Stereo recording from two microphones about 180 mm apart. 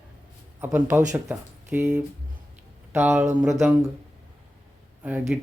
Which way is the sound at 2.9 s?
10° right (ahead or behind).